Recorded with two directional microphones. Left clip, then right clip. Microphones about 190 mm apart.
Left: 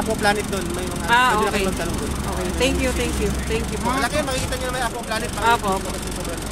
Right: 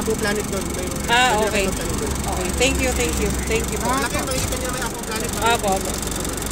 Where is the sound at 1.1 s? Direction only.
25° left (ahead or behind).